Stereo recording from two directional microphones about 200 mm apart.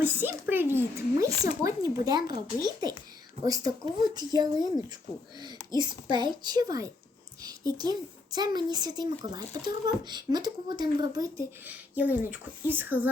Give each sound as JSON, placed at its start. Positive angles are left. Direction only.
{"t": 0.0, "sound": "speech", "side_deg": -10}
{"t": 5.7, "sound": "speech", "side_deg": -20}